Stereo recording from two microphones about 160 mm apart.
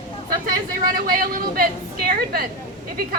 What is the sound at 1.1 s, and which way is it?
Speech, 60° right (ahead or behind).